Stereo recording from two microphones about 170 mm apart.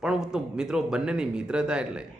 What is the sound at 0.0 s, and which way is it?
A man's voice, 5° right (ahead or behind).